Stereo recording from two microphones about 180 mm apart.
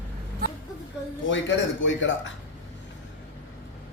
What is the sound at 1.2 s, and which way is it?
Speech, 90° left.